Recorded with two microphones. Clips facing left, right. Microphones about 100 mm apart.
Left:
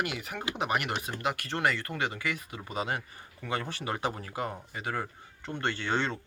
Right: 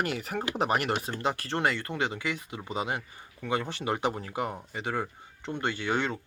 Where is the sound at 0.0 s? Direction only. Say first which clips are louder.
Right 3 dB; 35° right (ahead or behind).